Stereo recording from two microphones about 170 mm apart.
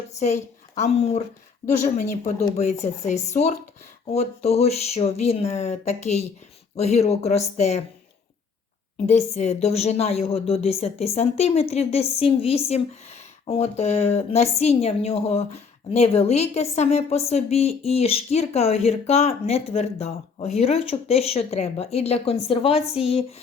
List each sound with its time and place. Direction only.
0.2 s a woman's voice: 45° left (ahead or behind)
9.0 s a woman's voice: 40° left (ahead or behind)